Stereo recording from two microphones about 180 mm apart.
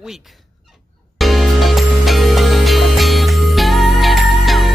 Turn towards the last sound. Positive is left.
turn(degrees=0)  # may be behind; listen again after turning